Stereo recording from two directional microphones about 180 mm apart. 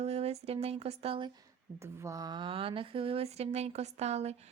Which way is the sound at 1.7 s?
15° right (ahead or behind).